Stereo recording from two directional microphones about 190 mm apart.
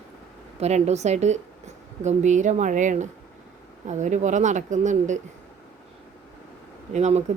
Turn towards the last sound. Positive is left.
turn(degrees=-35)  # may be behind; listen again after turning